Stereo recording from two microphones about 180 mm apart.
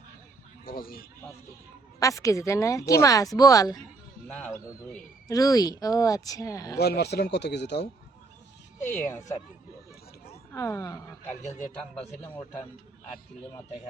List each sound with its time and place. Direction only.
0.6 s speech: 55° left (ahead or behind)
2.0 s a woman's voice: 20° left (ahead or behind)
4.3 s speech: 5° left (ahead or behind)
5.3 s speech: 20° left (ahead or behind)
6.7 s a man's voice: 65° left (ahead or behind)
8.8 s a woman's voice: 10° left (ahead or behind)
10.5 s a woman's voice: 15° left (ahead or behind)